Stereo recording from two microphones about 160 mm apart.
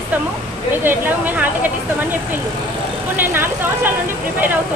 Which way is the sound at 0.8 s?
10° right (ahead or behind).